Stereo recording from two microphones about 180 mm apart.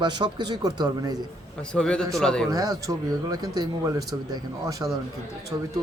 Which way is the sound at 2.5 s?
20° right (ahead or behind).